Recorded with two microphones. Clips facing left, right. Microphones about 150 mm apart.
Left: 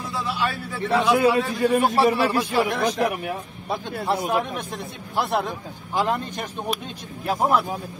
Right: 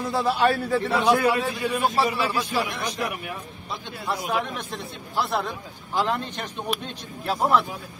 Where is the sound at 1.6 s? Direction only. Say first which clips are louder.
Left 5 dB; 50° left (ahead or behind).